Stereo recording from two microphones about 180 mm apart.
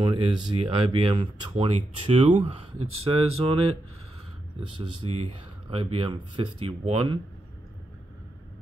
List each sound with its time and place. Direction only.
0.0 s speech: 25° right (ahead or behind)
5.0 s speech: 25° right (ahead or behind)